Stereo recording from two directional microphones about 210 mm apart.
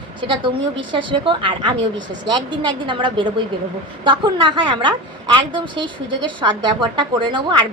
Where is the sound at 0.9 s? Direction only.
20° right (ahead or behind).